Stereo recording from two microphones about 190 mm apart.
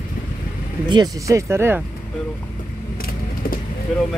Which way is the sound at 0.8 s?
20° right (ahead or behind).